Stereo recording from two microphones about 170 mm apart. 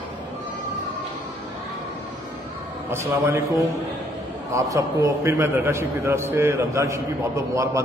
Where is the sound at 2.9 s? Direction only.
15° right (ahead or behind).